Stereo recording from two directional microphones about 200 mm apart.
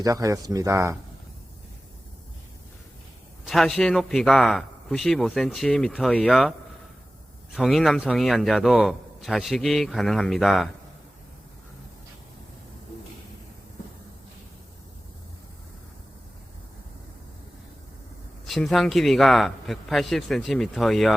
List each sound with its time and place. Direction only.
0.0 s speech: 15° right (ahead or behind)
3.4 s a man's voice: centre (ahead or behind)
7.5 s a man's voice: centre (ahead or behind)
18.4 s a man's voice: centre (ahead or behind)